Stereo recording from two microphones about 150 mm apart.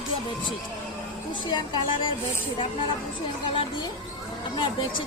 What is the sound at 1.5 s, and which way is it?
Speech, 30° left (ahead or behind).